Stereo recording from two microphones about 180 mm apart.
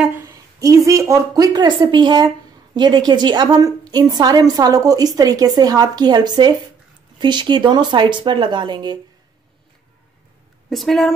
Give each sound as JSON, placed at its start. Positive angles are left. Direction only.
{"t": 0.0, "sound": "a woman's voice", "side_deg": -15}
{"t": 10.7, "sound": "a woman's voice", "side_deg": 0}